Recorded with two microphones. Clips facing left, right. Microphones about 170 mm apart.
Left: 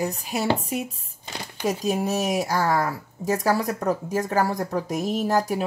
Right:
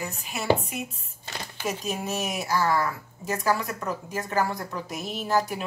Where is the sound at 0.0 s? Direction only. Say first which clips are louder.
Left 7 dB; 35° left (ahead or behind).